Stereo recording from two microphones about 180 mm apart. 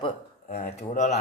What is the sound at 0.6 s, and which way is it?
Speech, 40° left (ahead or behind).